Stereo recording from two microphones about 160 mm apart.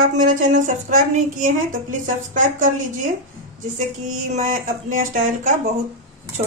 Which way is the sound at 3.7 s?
55° right (ahead or behind).